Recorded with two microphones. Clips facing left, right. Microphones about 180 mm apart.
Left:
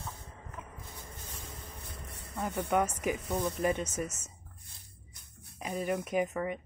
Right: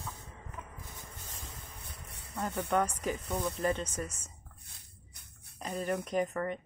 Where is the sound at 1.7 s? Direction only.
65° left (ahead or behind).